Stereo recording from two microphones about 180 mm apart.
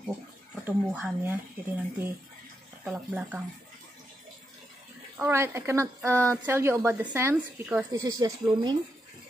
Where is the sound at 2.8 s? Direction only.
5° right (ahead or behind).